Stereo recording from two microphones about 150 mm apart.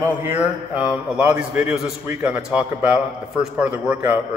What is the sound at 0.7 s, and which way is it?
A man's voice, 10° right (ahead or behind).